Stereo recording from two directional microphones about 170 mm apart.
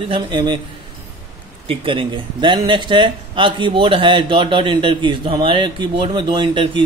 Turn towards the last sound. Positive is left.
turn(degrees=-30)  # may be behind; listen again after turning